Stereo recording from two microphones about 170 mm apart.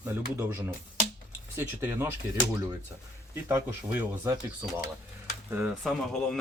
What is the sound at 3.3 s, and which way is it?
Speech, 15° right (ahead or behind).